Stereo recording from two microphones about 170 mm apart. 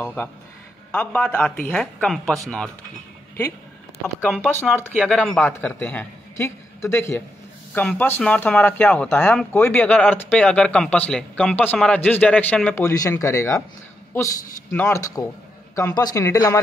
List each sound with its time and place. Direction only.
0.0 s speech: 10° left (ahead or behind)
4.2 s speech: 10° left (ahead or behind)